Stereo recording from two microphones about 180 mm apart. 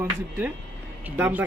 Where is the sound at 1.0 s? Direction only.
10° right (ahead or behind).